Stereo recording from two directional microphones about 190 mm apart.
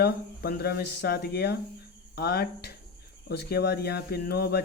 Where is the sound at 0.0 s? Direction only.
55° left (ahead or behind).